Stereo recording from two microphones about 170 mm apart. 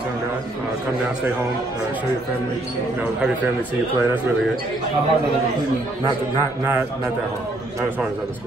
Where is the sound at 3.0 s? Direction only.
5° right (ahead or behind).